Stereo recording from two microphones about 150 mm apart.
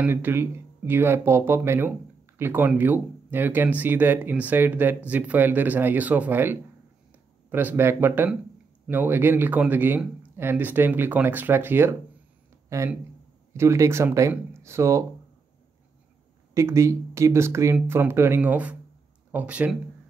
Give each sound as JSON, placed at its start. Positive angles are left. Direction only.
{"t": 0.0, "sound": "speech", "side_deg": -15}
{"t": 12.6, "sound": "a sound", "side_deg": -20}
{"t": 13.5, "sound": "speech", "side_deg": -20}
{"t": 16.5, "sound": "speech", "side_deg": -20}